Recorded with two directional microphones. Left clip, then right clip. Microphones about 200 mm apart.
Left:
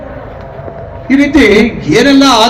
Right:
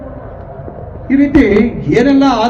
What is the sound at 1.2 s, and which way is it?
A man's voice, 25° left (ahead or behind).